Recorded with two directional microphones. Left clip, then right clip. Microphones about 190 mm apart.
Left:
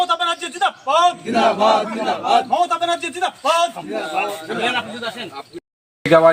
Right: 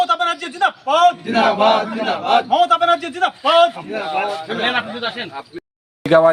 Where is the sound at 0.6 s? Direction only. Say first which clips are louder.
Right 1 dB; 30° right (ahead or behind).